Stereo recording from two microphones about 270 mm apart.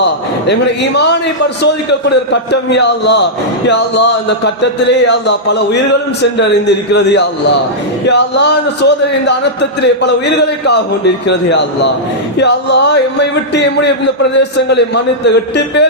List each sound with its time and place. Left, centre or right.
0.0 s a man's voice: left